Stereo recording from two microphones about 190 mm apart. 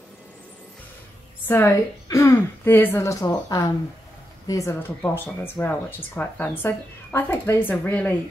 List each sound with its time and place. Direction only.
1.5 s a woman's voice: 15° left (ahead or behind)